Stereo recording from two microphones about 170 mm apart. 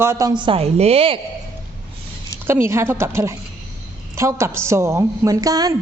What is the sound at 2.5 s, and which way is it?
A woman's voice, 15° right (ahead or behind).